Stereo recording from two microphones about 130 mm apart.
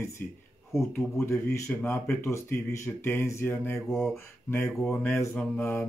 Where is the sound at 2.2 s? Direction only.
20° left (ahead or behind).